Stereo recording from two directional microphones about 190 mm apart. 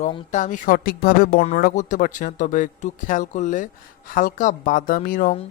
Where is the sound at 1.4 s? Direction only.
40° left (ahead or behind).